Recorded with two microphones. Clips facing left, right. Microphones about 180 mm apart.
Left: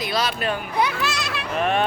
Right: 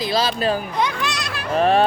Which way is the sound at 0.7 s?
5° left (ahead or behind).